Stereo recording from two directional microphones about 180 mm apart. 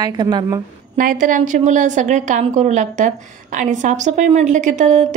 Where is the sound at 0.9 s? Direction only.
50° right (ahead or behind).